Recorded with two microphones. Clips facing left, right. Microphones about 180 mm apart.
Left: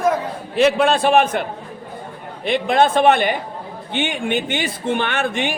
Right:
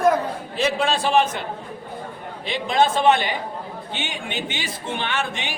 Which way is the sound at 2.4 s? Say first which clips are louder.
Left 4 dB; 60° left (ahead or behind).